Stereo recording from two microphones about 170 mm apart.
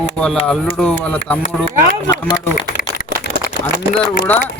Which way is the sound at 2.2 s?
25° left (ahead or behind).